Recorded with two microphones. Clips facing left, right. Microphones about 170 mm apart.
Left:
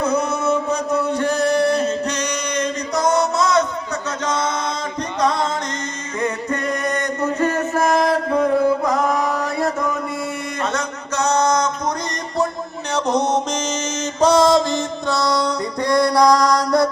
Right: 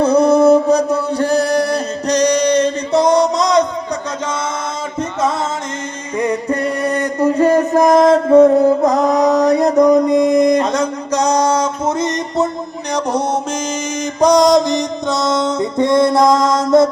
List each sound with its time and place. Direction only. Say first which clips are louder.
0.0 s music: right 10 dB; 35° right (ahead or behind)
3.4 s a sound: right 4 dB; 15° right (ahead or behind)
6.5 s music: right 5 dB; 35° right (ahead or behind)
9.0 s mantra: right 8 dB; 20° right (ahead or behind)
9.7 s a sound: right 13 dB; 40° right (ahead or behind)
10.1 s a sound: right 13 dB; 15° right (ahead or behind)
10.4 s music: right 11 dB; 15° right (ahead or behind)
11.9 s music: right 7 dB; 25° right (ahead or behind)
12.9 s music: right 1 dB; 10° right (ahead or behind)